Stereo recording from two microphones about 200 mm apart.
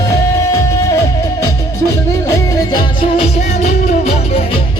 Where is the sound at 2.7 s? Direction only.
30° left (ahead or behind).